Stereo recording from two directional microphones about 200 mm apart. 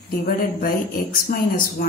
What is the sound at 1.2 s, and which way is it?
Speech, 45° left (ahead or behind).